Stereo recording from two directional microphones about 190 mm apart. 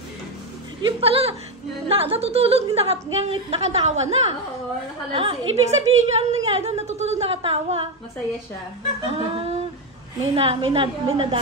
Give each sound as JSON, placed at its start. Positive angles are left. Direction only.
{"t": 0.8, "sound": "a woman's voice", "side_deg": -30}
{"t": 9.0, "sound": "a woman's voice", "side_deg": -30}